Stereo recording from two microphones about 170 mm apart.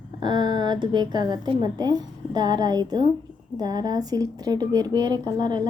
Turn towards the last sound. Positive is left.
turn(degrees=-25)  # may be behind; listen again after turning